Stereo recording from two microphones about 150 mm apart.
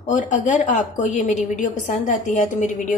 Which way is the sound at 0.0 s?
55° left (ahead or behind).